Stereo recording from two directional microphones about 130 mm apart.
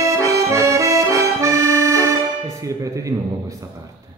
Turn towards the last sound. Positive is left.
turn(degrees=-25)  # may be behind; listen again after turning